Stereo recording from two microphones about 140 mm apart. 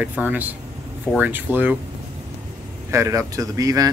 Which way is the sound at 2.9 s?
20° right (ahead or behind).